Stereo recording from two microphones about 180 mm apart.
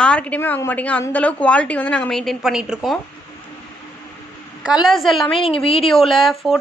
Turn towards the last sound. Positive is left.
turn(degrees=0)  # may be behind; listen again after turning